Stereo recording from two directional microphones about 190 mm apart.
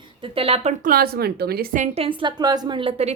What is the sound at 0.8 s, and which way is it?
A woman's voice, 50° right (ahead or behind).